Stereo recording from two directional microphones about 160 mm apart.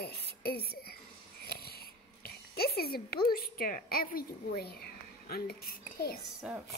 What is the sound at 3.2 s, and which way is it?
A woman's voice, 65° left (ahead or behind).